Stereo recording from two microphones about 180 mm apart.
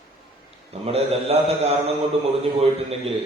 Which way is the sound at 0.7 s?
35° right (ahead or behind).